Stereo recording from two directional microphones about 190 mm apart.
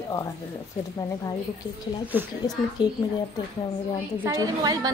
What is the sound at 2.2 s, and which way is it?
Speech, 10° right (ahead or behind).